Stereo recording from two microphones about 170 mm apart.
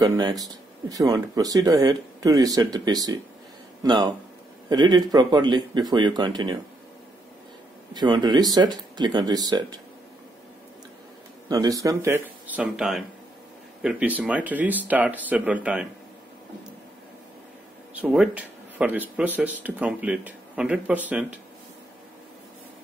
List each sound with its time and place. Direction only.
0.0 s speech: 25° right (ahead or behind)
7.9 s speech: 25° right (ahead or behind)
11.4 s speech: 20° right (ahead or behind)
17.9 s speech: 5° right (ahead or behind)